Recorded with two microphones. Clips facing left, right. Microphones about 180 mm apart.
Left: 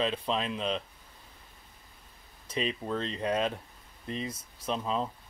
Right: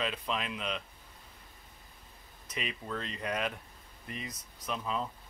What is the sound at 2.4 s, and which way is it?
Speech, 30° left (ahead or behind).